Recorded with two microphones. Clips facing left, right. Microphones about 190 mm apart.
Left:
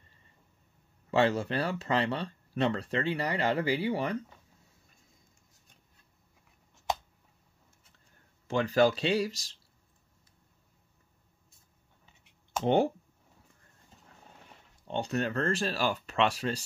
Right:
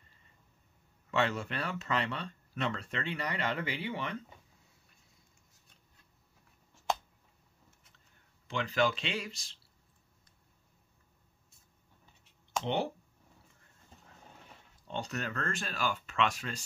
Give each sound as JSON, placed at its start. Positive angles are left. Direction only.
{"t": 1.1, "sound": "speech", "side_deg": 35}
{"t": 8.5, "sound": "speech", "side_deg": 40}
{"t": 14.9, "sound": "speech", "side_deg": 30}